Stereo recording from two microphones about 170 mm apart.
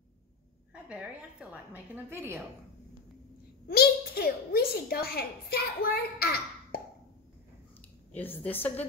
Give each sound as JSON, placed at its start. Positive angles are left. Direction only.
{"t": 0.8, "sound": "a woman's voice", "side_deg": -10}
{"t": 3.6, "sound": "a woman's voice", "side_deg": 65}
{"t": 8.1, "sound": "a woman's voice", "side_deg": 10}